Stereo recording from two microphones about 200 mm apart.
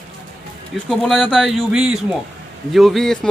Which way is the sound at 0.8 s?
Centre (ahead or behind).